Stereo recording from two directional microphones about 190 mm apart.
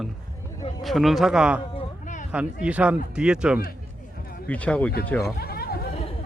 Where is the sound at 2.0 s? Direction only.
40° left (ahead or behind).